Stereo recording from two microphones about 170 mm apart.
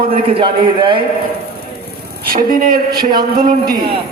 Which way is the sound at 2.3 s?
60° right (ahead or behind).